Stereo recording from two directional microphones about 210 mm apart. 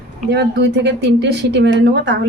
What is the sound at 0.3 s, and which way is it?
A woman's voice, 55° right (ahead or behind).